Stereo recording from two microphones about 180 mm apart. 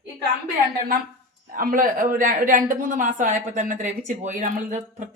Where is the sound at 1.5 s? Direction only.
50° right (ahead or behind).